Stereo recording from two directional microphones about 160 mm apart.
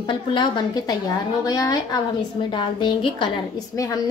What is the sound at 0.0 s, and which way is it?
A woman's voice, 30° left (ahead or behind).